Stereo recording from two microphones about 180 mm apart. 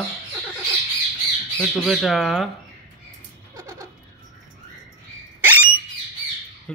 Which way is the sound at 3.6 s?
20° right (ahead or behind).